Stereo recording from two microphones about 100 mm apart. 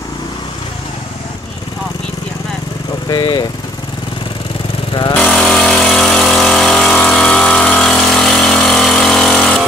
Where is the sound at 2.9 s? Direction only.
50° left (ahead or behind).